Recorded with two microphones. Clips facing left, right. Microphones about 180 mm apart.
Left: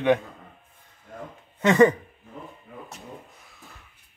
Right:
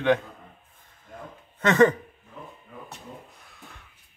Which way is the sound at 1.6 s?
15° left (ahead or behind).